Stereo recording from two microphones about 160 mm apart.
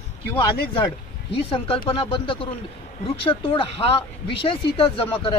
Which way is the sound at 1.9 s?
35° left (ahead or behind).